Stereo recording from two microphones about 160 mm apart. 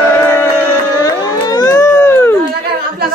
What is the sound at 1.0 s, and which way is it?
Music, 20° left (ahead or behind).